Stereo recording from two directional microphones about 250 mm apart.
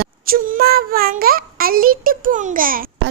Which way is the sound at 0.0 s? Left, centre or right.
Right.